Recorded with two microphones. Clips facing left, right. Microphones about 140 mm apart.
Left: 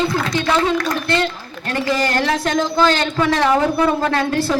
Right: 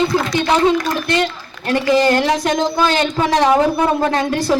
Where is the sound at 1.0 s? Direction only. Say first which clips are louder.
Right 1 dB; 15° right (ahead or behind).